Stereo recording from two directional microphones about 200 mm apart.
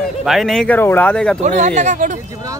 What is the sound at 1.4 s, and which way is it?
Speech, 35° right (ahead or behind).